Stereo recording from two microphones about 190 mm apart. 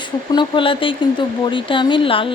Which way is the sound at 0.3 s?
25° left (ahead or behind).